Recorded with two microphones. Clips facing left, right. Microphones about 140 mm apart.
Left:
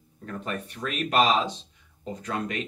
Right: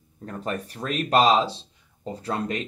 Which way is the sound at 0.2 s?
35° right (ahead or behind).